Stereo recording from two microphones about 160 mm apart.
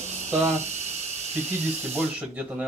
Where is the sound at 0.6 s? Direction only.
45° right (ahead or behind).